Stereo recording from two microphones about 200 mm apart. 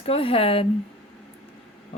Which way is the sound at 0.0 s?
30° left (ahead or behind).